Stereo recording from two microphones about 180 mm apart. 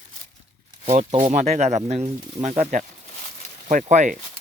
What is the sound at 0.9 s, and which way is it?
Speech, 40° right (ahead or behind).